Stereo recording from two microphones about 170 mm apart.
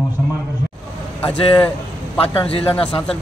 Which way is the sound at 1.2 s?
30° left (ahead or behind).